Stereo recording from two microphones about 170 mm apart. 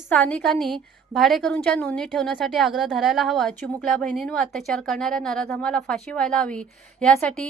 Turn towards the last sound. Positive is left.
turn(degrees=5)  # may be behind; listen again after turning